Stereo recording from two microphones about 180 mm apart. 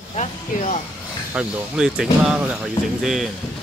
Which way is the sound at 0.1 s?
35° left (ahead or behind).